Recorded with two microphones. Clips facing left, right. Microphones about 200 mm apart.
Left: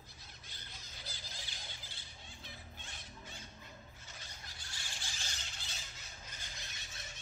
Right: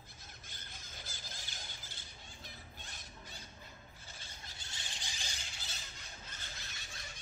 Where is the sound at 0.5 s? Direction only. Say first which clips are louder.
Even; 50° right (ahead or behind).